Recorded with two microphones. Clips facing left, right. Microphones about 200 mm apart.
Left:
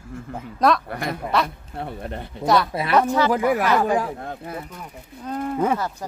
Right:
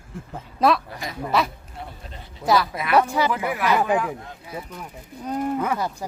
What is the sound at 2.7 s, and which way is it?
Speech, 30° left (ahead or behind).